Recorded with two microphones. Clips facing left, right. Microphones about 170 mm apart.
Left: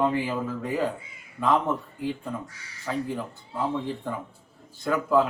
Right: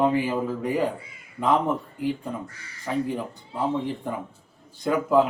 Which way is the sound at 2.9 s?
15° right (ahead or behind).